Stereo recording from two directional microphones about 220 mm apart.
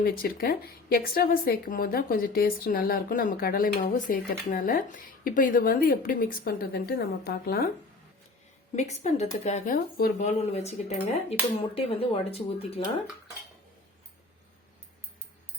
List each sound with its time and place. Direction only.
0.0 s a woman's voice: 40° left (ahead or behind)
8.7 s speech: 30° left (ahead or behind)